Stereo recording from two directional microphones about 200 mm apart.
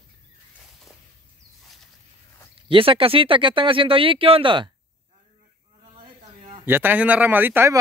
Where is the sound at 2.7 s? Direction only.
25° right (ahead or behind).